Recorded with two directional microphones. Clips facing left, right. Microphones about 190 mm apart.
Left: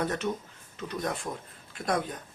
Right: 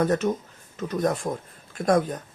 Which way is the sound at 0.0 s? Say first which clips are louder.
Right 7 dB; 45° right (ahead or behind).